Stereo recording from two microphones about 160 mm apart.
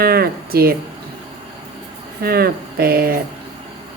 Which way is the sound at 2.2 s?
70° right (ahead or behind).